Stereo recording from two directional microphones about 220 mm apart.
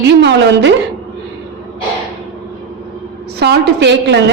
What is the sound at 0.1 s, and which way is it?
Speech, 55° right (ahead or behind).